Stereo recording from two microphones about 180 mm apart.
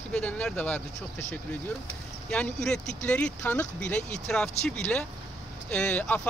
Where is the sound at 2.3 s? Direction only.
5° left (ahead or behind).